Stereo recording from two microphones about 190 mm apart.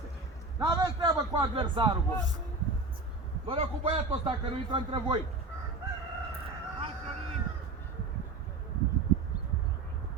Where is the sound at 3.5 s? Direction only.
30° right (ahead or behind).